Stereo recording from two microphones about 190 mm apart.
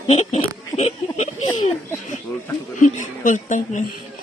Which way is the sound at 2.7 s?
40° left (ahead or behind).